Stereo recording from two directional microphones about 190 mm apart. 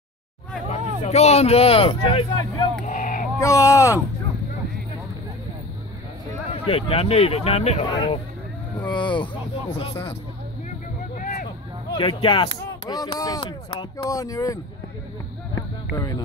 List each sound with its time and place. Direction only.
0.7 s speech: 35° left (ahead or behind)
2.8 s a sound: 45° left (ahead or behind)
3.3 s speech: 15° left (ahead or behind)
6.5 s speech: 30° left (ahead or behind)
7.9 s speech: 25° left (ahead or behind)
11.9 s speech: 25° left (ahead or behind)
15.5 s a sound: 20° left (ahead or behind)